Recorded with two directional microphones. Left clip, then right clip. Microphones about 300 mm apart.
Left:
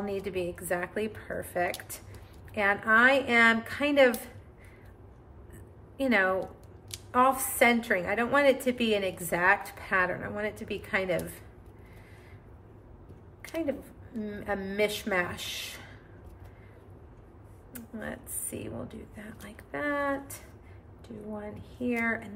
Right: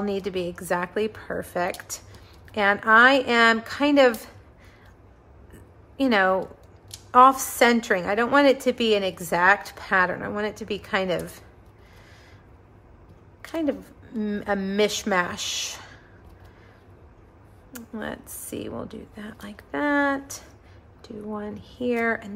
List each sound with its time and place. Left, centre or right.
0.0 s a woman's voice: centre
5.9 s a woman's voice: centre
13.4 s a sound: centre
14.2 s a woman's voice: centre
17.7 s a woman's voice: centre